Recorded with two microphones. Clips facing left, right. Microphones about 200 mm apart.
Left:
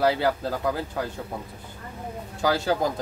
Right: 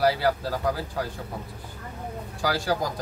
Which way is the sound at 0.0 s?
20° left (ahead or behind).